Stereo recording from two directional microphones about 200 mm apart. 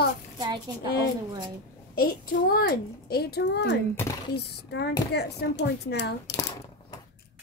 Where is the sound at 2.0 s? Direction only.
50° left (ahead or behind).